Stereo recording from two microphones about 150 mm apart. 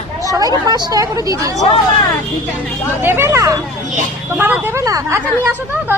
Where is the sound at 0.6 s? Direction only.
25° right (ahead or behind).